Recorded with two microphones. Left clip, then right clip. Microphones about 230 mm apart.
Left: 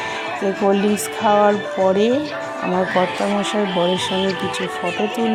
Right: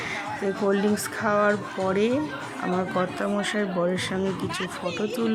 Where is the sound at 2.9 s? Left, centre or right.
Centre.